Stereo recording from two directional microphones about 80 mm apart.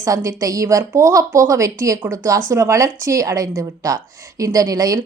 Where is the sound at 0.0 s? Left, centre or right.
Right.